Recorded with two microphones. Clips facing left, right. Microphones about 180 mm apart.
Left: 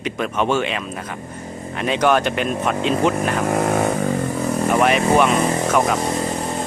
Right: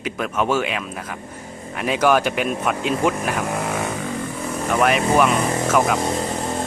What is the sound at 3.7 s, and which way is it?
Vehicle, 45° left (ahead or behind).